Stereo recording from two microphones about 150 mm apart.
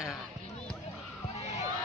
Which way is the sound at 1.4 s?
45° left (ahead or behind).